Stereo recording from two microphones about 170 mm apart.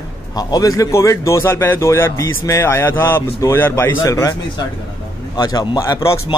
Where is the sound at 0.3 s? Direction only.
20° left (ahead or behind).